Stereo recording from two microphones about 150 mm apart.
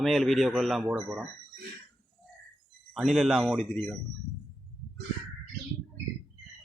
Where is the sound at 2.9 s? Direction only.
Centre (ahead or behind).